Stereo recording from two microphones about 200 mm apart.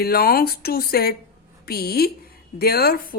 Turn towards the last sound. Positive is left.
turn(degrees=45)  # may be behind; listen again after turning